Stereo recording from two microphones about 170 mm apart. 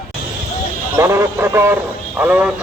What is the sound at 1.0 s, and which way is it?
A man's voice, 15° right (ahead or behind).